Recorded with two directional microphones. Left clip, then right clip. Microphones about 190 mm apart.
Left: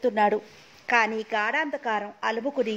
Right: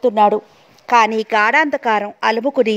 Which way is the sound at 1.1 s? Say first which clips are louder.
Right 12 dB; 55° right (ahead or behind).